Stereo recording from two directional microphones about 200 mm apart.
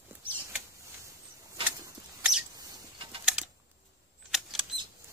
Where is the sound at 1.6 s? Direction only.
10° right (ahead or behind).